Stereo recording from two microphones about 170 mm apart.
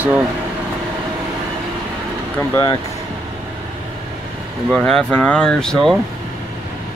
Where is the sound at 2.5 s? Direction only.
20° left (ahead or behind).